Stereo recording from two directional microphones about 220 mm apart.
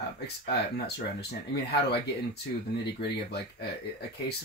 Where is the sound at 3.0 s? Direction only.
45° left (ahead or behind).